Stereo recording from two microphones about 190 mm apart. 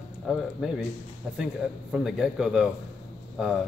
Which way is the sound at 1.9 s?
Centre (ahead or behind).